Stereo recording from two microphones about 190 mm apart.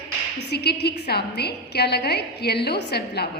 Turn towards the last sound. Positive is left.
turn(degrees=60)  # may be behind; listen again after turning